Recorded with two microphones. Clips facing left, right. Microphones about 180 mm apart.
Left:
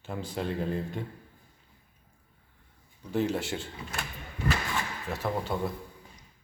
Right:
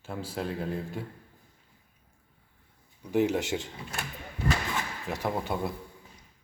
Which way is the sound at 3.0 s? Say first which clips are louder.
Right 3 dB; 15° right (ahead or behind).